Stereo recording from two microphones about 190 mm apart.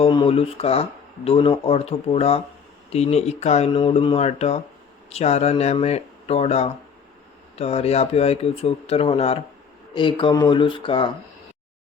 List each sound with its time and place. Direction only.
0.0 s speech: 25° left (ahead or behind)